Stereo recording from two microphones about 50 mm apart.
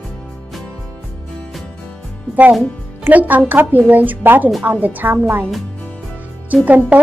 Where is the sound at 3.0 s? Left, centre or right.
Right.